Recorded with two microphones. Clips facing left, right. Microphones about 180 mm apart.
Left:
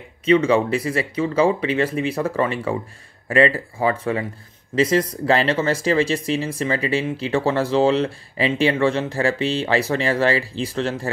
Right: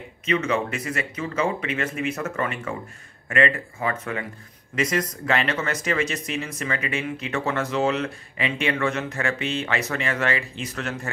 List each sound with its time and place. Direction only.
0.2 s speech: 30° left (ahead or behind)